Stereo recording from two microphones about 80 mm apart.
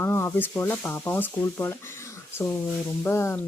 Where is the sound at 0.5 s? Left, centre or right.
Centre.